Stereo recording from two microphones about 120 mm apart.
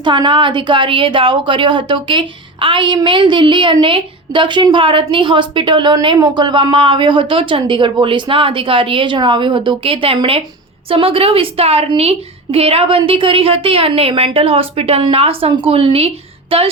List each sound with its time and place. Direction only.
0.0 s a woman's voice: 40° right (ahead or behind)